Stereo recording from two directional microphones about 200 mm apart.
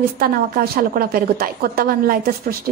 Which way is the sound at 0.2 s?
50° right (ahead or behind).